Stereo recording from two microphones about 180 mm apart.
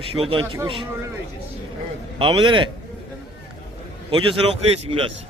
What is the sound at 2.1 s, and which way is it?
Speech, 30° right (ahead or behind).